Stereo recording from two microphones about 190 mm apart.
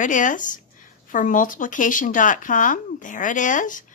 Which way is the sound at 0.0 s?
40° left (ahead or behind).